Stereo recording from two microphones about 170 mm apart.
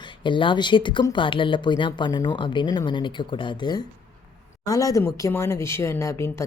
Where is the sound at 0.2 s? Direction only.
30° left (ahead or behind).